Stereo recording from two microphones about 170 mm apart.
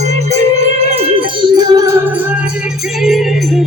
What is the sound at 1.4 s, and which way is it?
Music, 20° right (ahead or behind).